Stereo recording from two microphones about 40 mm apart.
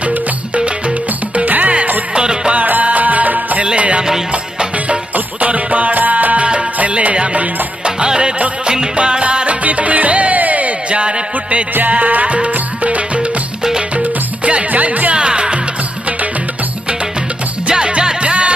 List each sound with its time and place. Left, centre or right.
1.4 s music: right
2.1 s music: right
2.5 s music: right
3.6 s music: right
7.3 s music: right
14.7 s music: right
15.1 s music: right
17.6 s music: right